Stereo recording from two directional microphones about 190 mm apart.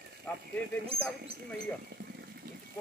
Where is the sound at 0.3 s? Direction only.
10° left (ahead or behind).